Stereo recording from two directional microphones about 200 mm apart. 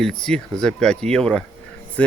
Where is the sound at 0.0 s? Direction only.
5° left (ahead or behind).